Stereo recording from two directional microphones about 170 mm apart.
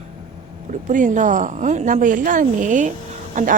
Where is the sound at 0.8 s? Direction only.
45° right (ahead or behind).